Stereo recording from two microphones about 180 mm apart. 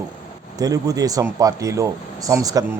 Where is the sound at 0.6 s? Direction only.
20° right (ahead or behind).